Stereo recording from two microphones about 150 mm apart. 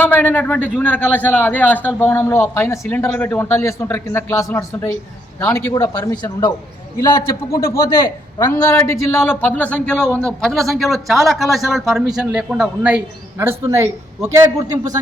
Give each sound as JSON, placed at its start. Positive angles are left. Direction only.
{"t": 0.0, "sound": "a man's voice", "side_deg": 10}
{"t": 13.4, "sound": "a man's voice", "side_deg": -15}